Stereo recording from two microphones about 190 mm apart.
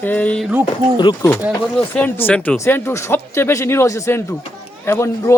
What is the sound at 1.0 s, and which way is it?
Speech, 25° left (ahead or behind).